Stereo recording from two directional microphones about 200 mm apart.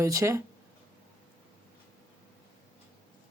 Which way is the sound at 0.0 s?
15° right (ahead or behind).